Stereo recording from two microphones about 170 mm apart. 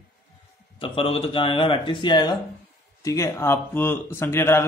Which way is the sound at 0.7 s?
30° left (ahead or behind).